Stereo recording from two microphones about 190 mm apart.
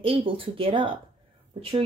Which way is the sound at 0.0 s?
30° right (ahead or behind).